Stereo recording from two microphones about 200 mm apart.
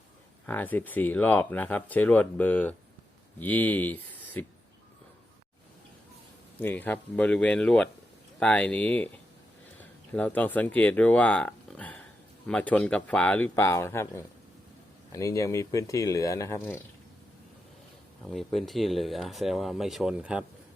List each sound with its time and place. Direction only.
0.4 s speech: 10° left (ahead or behind)
6.6 s speech: 10° left (ahead or behind)
10.1 s speech: 10° left (ahead or behind)
18.3 s speech: centre (ahead or behind)